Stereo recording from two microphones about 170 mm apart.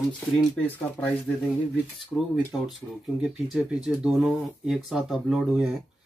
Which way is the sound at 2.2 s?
Centre (ahead or behind).